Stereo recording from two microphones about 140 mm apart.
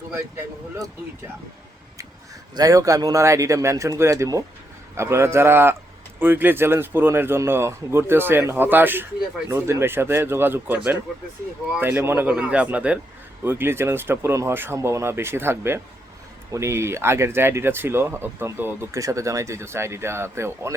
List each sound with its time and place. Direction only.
2.6 s speech: 25° right (ahead or behind)
11.8 s speech: 15° right (ahead or behind)